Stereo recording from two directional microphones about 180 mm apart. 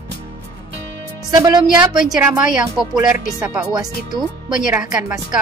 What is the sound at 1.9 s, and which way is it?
Speech, 5° right (ahead or behind).